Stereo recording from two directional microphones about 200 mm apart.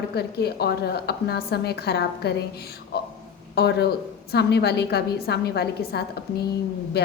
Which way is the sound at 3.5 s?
55° left (ahead or behind).